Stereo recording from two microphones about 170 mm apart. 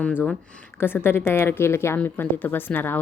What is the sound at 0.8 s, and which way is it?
Speech, 15° left (ahead or behind).